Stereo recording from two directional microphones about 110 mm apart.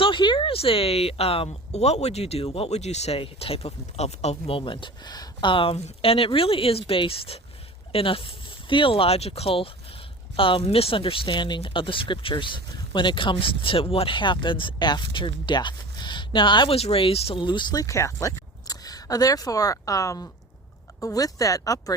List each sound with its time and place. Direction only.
0.0 s a woman's voice: 50° left (ahead or behind)
5.7 s a woman's voice: 60° left (ahead or behind)
10.3 s speech: 55° left (ahead or behind)
16.7 s a woman's voice: 60° left (ahead or behind)
17.4 s speech: 45° left (ahead or behind)